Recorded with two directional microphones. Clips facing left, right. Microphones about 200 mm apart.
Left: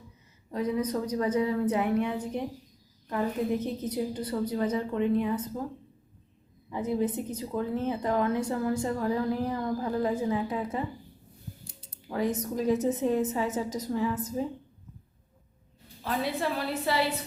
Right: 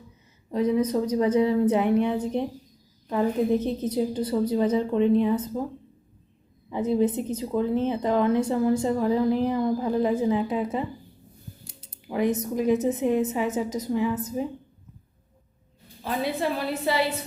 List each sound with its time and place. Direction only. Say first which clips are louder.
0.5 s a woman's voice: right 6 dB; 25° right (ahead or behind)
6.7 s a woman's voice: right 5 dB; 25° right (ahead or behind)
12.0 s a woman's voice: right 4 dB; 15° right (ahead or behind)
16.0 s a woman's voice: right 3 dB; 20° right (ahead or behind)